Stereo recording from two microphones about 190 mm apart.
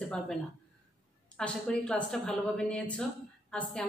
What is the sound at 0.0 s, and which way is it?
A woman's voice, centre (ahead or behind).